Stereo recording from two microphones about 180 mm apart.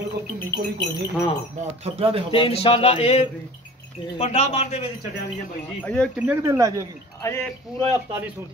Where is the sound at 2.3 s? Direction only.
30° left (ahead or behind).